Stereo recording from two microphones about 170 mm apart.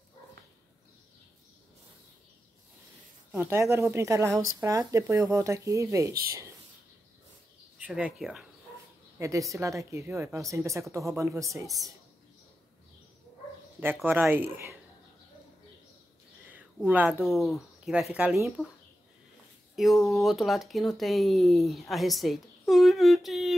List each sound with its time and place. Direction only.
3.3 s speech: 15° right (ahead or behind)
7.8 s speech: 5° right (ahead or behind)
9.2 s speech: 20° right (ahead or behind)
13.7 s speech: 10° right (ahead or behind)
16.4 s a sound: 10° right (ahead or behind)
17.2 s speech: centre (ahead or behind)
19.7 s speech: centre (ahead or behind)